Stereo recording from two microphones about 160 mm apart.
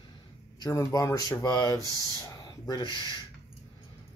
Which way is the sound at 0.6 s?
20° left (ahead or behind).